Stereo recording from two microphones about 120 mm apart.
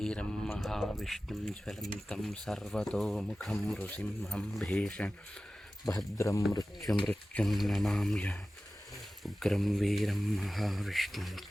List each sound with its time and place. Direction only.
0.0 s a sound: 5° left (ahead or behind)
0.6 s speech: centre (ahead or behind)
6.1 s speech: 25° left (ahead or behind)
7.1 s speech: 5° left (ahead or behind)